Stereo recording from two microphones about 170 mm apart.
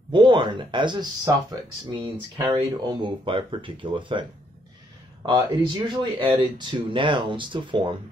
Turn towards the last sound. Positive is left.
turn(degrees=-30)  # may be behind; listen again after turning